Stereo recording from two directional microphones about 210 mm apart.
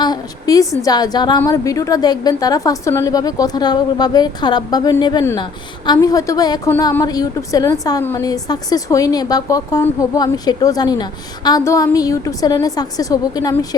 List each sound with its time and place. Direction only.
0.0 s a woman's voice: 20° left (ahead or behind)